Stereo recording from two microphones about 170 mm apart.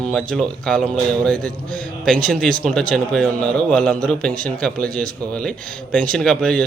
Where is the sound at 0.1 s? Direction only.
5° left (ahead or behind).